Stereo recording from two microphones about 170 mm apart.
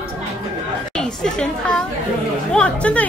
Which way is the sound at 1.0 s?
5° left (ahead or behind).